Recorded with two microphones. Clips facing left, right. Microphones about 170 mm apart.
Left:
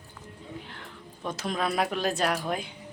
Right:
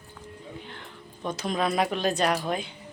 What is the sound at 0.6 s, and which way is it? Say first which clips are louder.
Speech: right 1 dB; centre (ahead or behind).